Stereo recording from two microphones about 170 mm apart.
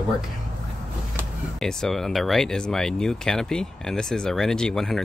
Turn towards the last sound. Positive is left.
turn(degrees=0)  # may be behind; listen again after turning